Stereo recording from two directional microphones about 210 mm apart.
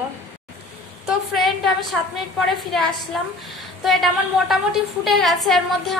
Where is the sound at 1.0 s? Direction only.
Centre (ahead or behind).